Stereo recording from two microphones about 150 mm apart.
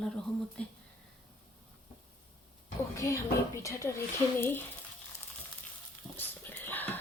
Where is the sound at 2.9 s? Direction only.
20° left (ahead or behind).